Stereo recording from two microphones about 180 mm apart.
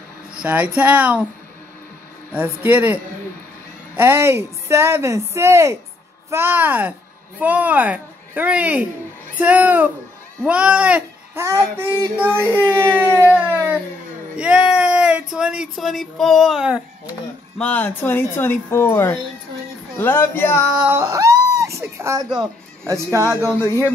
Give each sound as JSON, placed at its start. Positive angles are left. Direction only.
{"t": 0.4, "sound": "a woman's voice", "side_deg": -10}
{"t": 2.3, "sound": "a woman's voice", "side_deg": -10}
{"t": 10.4, "sound": "child singing", "side_deg": -5}
{"t": 11.7, "sound": "a woman's voice", "side_deg": -10}
{"t": 12.4, "sound": "speech", "side_deg": 10}
{"t": 13.1, "sound": "a sound", "side_deg": -10}
{"t": 14.3, "sound": "speech", "side_deg": -5}
{"t": 17.6, "sound": "speech", "side_deg": 10}
{"t": 20.8, "sound": "a sound", "side_deg": -15}
{"t": 22.4, "sound": "speech", "side_deg": -20}
{"t": 23.3, "sound": "speech", "side_deg": 15}